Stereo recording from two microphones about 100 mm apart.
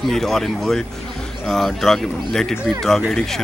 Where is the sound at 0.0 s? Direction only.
5° left (ahead or behind).